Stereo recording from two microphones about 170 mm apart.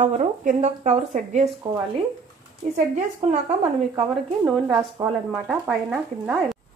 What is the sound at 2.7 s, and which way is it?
Speech, 45° right (ahead or behind).